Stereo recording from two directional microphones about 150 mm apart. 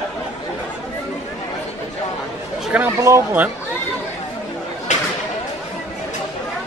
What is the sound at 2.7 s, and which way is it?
Speech, 15° right (ahead or behind).